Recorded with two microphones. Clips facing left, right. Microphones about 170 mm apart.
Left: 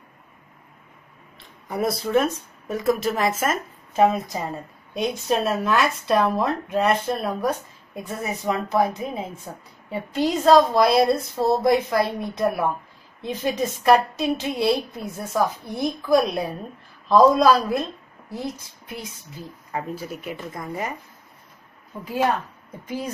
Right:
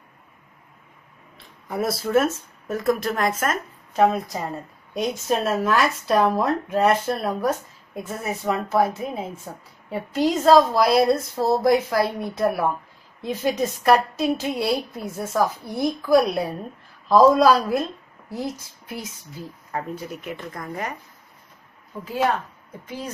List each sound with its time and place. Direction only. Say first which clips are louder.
1.7 s a woman's voice: even; centre (ahead or behind)